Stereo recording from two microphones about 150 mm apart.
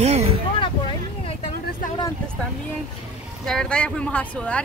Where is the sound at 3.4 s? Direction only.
5° left (ahead or behind).